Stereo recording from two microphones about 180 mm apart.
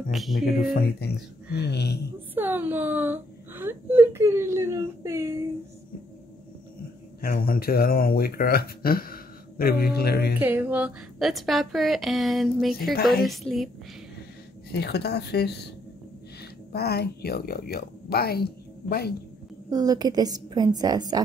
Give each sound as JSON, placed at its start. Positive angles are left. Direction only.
{"t": 0.1, "sound": "speech", "side_deg": 0}
{"t": 0.7, "sound": "speech", "side_deg": 65}
{"t": 2.3, "sound": "speech", "side_deg": -10}
{"t": 7.2, "sound": "speech", "side_deg": 55}
{"t": 10.4, "sound": "speech", "side_deg": -10}
{"t": 14.7, "sound": "speech", "side_deg": 65}
{"t": 16.7, "sound": "speech", "side_deg": 60}
{"t": 19.7, "sound": "a woman's voice", "side_deg": -20}